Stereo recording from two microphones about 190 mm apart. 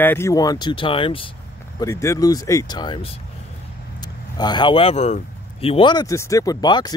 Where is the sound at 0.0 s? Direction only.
10° left (ahead or behind).